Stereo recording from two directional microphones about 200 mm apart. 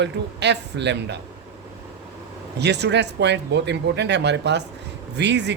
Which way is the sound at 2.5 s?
60° right (ahead or behind).